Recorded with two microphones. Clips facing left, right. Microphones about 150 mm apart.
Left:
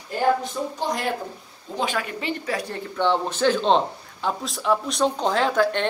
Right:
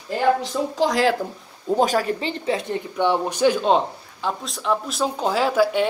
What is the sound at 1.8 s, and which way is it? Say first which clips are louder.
Speech: right 5 dB; 40° right (ahead or behind).